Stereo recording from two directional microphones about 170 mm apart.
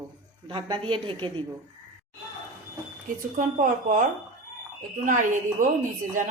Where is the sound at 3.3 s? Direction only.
50° right (ahead or behind).